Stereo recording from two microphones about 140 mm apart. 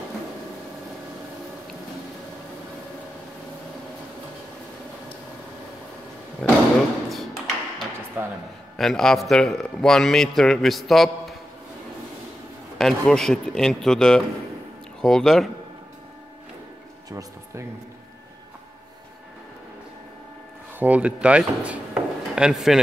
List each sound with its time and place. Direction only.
6.4 s a sound: 5° left (ahead or behind)
7.1 s tap: centre (ahead or behind)
8.2 s a sound: 15° right (ahead or behind)
8.7 s a man's voice: 5° left (ahead or behind)
12.7 s a man's voice: 5° left (ahead or behind)
17.1 s speech: 25° right (ahead or behind)
20.8 s speech: 10° right (ahead or behind)